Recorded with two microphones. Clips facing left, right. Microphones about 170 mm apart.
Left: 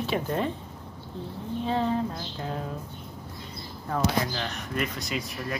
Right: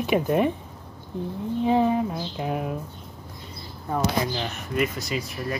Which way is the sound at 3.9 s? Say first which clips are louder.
Right 2 dB; 10° right (ahead or behind).